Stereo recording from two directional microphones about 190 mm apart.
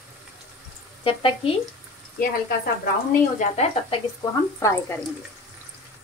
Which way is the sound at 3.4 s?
30° left (ahead or behind).